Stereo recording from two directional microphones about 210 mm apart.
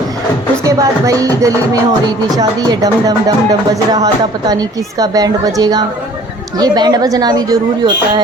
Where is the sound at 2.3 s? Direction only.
20° right (ahead or behind).